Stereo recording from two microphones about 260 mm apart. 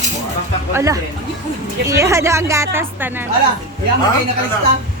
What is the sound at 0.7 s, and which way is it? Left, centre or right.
A woman's voice, centre.